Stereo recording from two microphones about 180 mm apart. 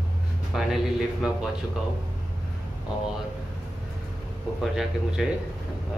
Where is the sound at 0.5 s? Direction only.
Centre (ahead or behind).